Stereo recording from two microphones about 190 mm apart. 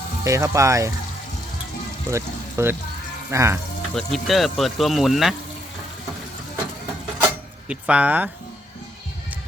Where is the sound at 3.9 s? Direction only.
Centre (ahead or behind).